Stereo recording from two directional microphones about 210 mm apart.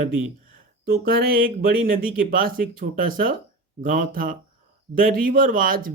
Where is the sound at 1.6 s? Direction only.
40° right (ahead or behind).